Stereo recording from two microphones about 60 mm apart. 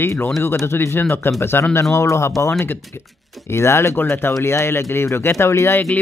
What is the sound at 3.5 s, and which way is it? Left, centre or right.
Speech, left.